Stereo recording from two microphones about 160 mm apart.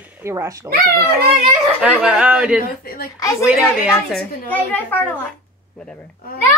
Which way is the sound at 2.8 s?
65° left (ahead or behind).